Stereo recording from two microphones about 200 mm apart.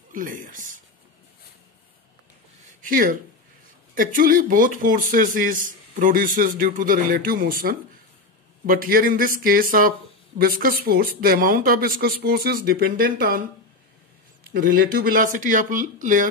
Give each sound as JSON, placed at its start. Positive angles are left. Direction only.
{"t": 0.1, "sound": "speech", "side_deg": -40}
{"t": 2.8, "sound": "speech", "side_deg": -45}
{"t": 14.6, "sound": "speech", "side_deg": -45}